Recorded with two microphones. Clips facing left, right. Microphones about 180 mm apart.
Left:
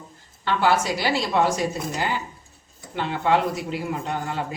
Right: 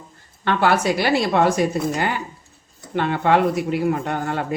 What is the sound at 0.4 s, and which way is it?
Speech, 60° right (ahead or behind).